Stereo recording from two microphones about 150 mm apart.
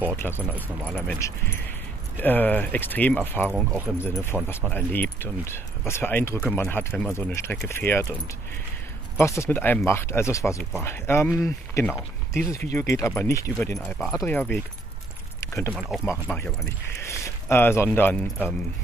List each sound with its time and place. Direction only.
0.1 s speech: 15° left (ahead or behind)
0.4 s speech: 10° right (ahead or behind)
0.8 s speech: 10° left (ahead or behind)
2.1 s speech: 10° left (ahead or behind)
3.4 s speech: 10° right (ahead or behind)
4.0 s speech: 15° left (ahead or behind)
9.2 s speech: 20° left (ahead or behind)
12.5 s speech: 55° right (ahead or behind)
12.8 s speech: 20° left (ahead or behind)
13.7 s speech: centre (ahead or behind)
14.2 s speech: 10° left (ahead or behind)
15.7 s speech: 5° right (ahead or behind)
16.1 s speech: 10° left (ahead or behind)